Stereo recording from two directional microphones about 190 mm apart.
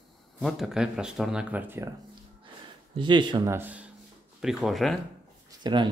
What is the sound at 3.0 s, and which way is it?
Speech, 25° right (ahead or behind).